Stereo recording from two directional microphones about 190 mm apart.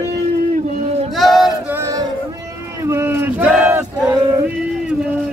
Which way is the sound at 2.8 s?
15° right (ahead or behind).